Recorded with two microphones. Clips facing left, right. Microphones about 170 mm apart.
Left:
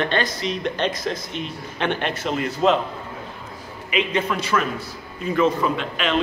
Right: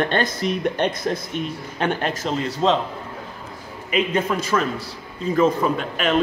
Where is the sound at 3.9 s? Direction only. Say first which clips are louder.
Right 2 dB; 45° right (ahead or behind).